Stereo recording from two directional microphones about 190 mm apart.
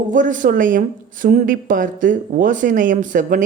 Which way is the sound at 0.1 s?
45° right (ahead or behind).